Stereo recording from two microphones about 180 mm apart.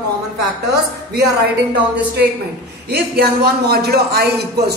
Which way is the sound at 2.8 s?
65° right (ahead or behind).